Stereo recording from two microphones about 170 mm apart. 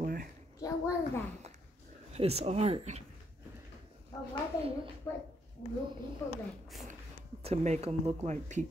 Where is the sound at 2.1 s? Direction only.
35° right (ahead or behind).